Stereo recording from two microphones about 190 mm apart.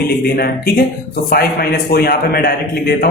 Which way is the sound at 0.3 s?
55° left (ahead or behind).